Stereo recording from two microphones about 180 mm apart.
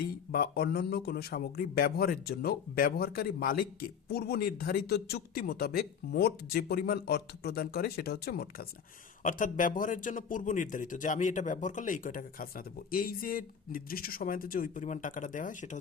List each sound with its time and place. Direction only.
0.0 s speech: 55° left (ahead or behind)
9.2 s speech: 45° left (ahead or behind)